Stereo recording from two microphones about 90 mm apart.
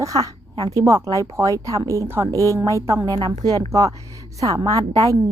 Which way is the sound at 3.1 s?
50° right (ahead or behind).